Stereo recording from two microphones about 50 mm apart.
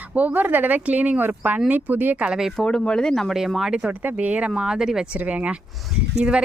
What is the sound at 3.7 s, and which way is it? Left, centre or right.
Speech, centre.